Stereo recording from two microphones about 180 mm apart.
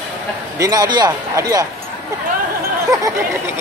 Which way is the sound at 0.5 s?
20° right (ahead or behind).